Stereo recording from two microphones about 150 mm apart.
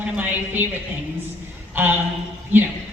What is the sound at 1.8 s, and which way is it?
Speech, 15° right (ahead or behind).